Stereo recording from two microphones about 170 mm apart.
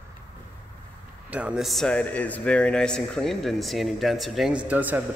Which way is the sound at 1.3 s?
5° right (ahead or behind).